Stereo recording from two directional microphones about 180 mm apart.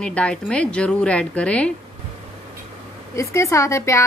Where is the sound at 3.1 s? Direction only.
15° left (ahead or behind).